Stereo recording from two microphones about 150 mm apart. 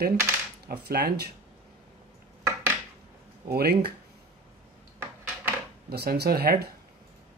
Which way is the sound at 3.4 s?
90° right.